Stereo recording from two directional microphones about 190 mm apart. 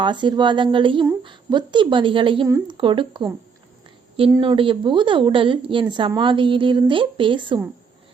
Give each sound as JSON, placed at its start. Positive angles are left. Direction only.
{"t": 0.0, "sound": "a woman's voice", "side_deg": -25}
{"t": 4.4, "sound": "a woman's voice", "side_deg": -25}